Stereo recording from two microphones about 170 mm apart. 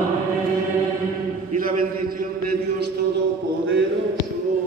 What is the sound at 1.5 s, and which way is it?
A man's voice, 55° right (ahead or behind).